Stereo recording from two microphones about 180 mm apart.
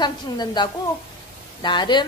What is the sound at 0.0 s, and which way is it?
Speech, 25° left (ahead or behind).